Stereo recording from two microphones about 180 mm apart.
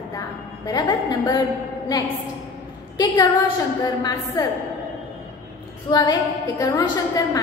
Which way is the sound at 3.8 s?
20° left (ahead or behind).